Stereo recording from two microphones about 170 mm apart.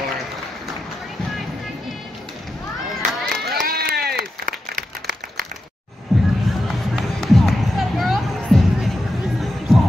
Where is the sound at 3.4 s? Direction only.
60° right (ahead or behind).